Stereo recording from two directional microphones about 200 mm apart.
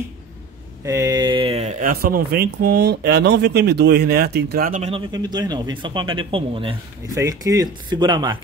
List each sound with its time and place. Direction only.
0.8 s speech: 15° right (ahead or behind); by 5.0 s 35° right (ahead or behind)
5.1 s speech: 20° right (ahead or behind)